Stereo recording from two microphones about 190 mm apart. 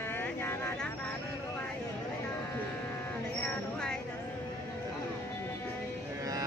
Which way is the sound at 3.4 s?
5° left (ahead or behind).